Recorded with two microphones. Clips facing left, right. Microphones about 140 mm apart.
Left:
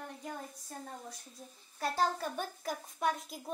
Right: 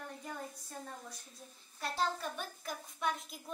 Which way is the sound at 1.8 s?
40° left (ahead or behind).